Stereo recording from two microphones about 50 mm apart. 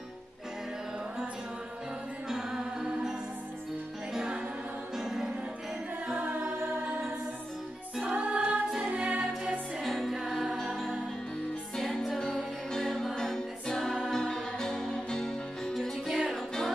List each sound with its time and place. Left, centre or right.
2.2 s music: centre
8.0 s music: right
9.8 s music: centre
11.7 s music: centre